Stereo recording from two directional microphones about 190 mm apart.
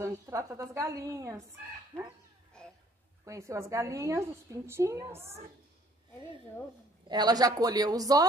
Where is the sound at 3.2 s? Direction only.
15° right (ahead or behind).